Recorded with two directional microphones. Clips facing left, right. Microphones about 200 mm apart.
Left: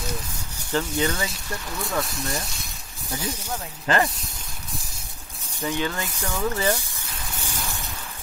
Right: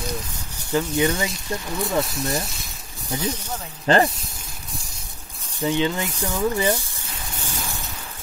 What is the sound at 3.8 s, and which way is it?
Speech, 30° right (ahead or behind).